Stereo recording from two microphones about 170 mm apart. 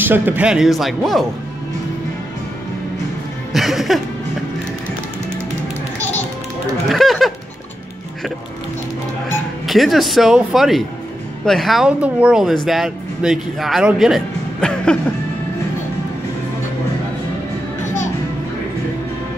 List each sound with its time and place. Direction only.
0.0 s speech: 10° right (ahead or behind)
3.5 s speech: centre (ahead or behind)
6.9 s speech: centre (ahead or behind)
9.7 s speech: centre (ahead or behind)